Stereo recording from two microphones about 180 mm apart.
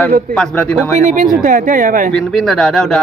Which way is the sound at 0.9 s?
45° right (ahead or behind).